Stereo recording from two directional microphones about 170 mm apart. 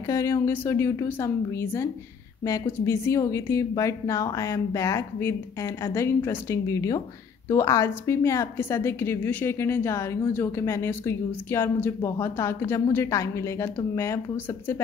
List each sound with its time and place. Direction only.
0.1 s a woman's voice: 20° left (ahead or behind)